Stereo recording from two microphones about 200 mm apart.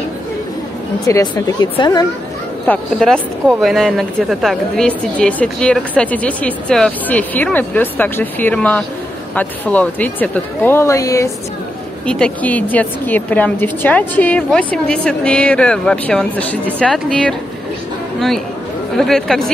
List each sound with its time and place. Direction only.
1.0 s a woman's voice: 15° left (ahead or behind)
2.6 s a woman's voice: 5° left (ahead or behind)
18.9 s a woman's voice: centre (ahead or behind)